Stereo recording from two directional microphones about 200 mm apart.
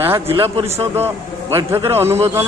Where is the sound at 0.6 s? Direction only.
30° right (ahead or behind).